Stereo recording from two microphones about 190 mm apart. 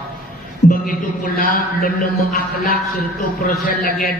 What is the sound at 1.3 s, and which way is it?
A man's voice, 45° left (ahead or behind).